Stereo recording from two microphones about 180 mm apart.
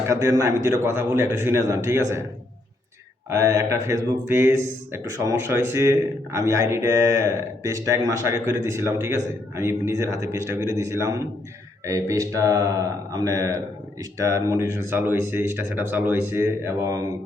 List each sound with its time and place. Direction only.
0.1 s speech: 20° right (ahead or behind)
3.2 s speech: 15° right (ahead or behind)